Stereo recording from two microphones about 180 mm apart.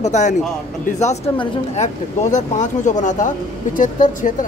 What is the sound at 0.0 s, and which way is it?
Speech, 40° left (ahead or behind).